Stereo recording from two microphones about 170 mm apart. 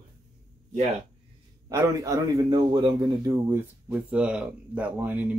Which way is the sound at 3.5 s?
15° right (ahead or behind).